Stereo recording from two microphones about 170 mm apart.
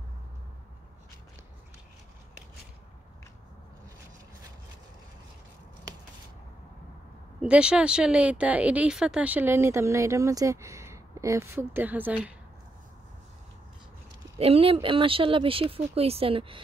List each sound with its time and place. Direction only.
7.4 s speech: 5° right (ahead or behind)
14.4 s speech: 35° right (ahead or behind)